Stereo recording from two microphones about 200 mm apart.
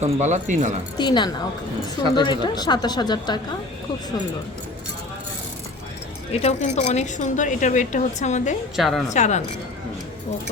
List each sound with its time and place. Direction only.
0.0 s speech: 35° right (ahead or behind)
0.9 s a woman's voice: 20° left (ahead or behind)
6.3 s a woman's voice: 35° left (ahead or behind)
8.7 s a woman's voice: centre (ahead or behind)
9.1 s a woman's voice: 35° left (ahead or behind)